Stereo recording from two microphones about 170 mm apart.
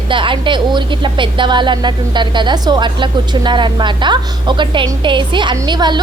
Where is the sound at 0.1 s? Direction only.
30° right (ahead or behind).